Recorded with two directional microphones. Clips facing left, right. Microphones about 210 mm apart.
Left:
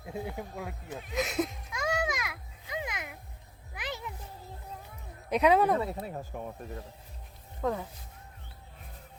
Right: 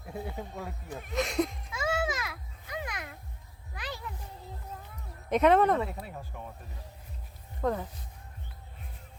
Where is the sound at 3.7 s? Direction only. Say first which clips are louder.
Left 1 dB; 20° left (ahead or behind).